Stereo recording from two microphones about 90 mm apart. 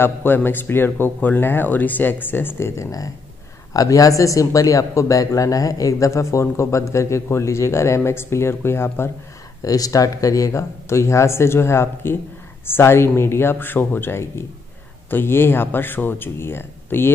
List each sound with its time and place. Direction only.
0.0 s speech: 25° left (ahead or behind)
9.6 s speech: 40° left (ahead or behind); by 17.1 s 25° left (ahead or behind)